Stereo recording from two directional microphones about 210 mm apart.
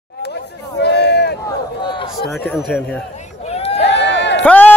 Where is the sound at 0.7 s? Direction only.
55° left (ahead or behind).